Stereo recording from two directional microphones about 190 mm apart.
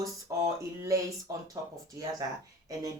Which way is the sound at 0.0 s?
15° right (ahead or behind).